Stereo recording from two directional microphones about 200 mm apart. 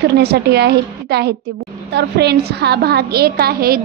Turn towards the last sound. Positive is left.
turn(degrees=-50)  # may be behind; listen again after turning